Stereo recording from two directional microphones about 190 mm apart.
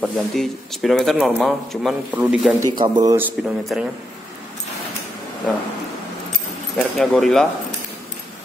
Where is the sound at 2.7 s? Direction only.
25° right (ahead or behind).